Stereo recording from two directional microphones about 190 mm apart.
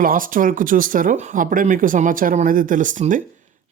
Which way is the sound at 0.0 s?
45° right (ahead or behind).